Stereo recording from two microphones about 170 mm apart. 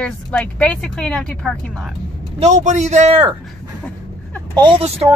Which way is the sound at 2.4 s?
45° right (ahead or behind).